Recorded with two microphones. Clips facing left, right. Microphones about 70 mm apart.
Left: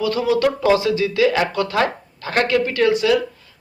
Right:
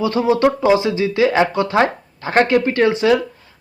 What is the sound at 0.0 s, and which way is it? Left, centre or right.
Speech, right.